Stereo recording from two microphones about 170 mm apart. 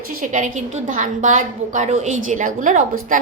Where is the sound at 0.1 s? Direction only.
50° right (ahead or behind).